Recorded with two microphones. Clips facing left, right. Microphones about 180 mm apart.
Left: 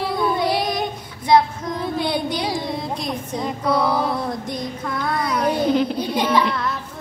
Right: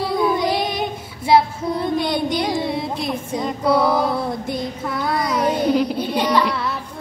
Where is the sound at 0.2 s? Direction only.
5° right (ahead or behind).